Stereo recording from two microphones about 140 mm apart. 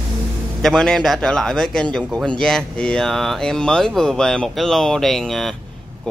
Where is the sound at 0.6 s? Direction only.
5° left (ahead or behind).